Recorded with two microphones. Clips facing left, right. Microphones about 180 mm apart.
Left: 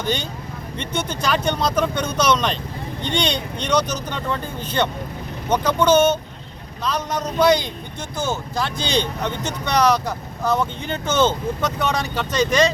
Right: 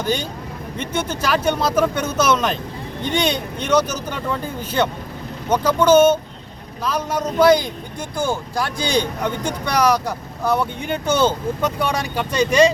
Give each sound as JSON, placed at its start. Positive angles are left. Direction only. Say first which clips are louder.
{"t": 0.0, "sound": "speech", "louder": "right 2 dB", "side_deg": -10}